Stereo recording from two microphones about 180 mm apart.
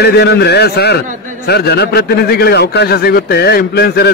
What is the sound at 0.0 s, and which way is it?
A man's voice, 65° left (ahead or behind).